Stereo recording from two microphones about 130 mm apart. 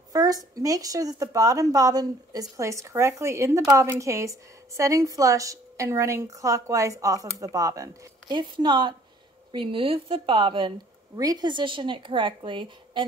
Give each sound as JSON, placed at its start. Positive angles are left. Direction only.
{"t": 0.1, "sound": "a woman's voice", "side_deg": -30}
{"t": 8.4, "sound": "a woman's voice", "side_deg": -35}